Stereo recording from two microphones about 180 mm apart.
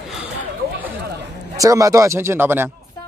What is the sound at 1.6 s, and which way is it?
Speech, 20° right (ahead or behind).